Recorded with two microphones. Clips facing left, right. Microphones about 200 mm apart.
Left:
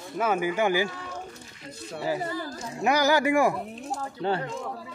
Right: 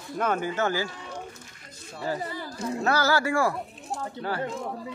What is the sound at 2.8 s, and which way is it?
Speech, 15° left (ahead or behind).